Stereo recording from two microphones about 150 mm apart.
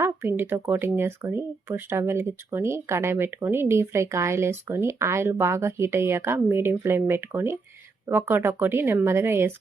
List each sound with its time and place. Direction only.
0.0 s speech: 15° right (ahead or behind)